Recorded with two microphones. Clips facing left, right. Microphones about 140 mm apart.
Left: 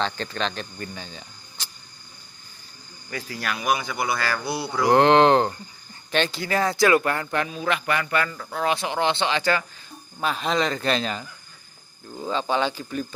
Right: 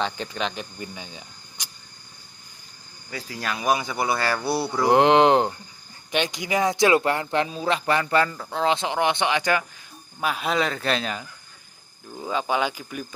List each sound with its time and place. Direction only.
0.0 s speech: 10° right (ahead or behind)
3.1 s speech: 15° right (ahead or behind); by 4.8 s 30° right (ahead or behind)
4.8 s a man's voice: 15° right (ahead or behind)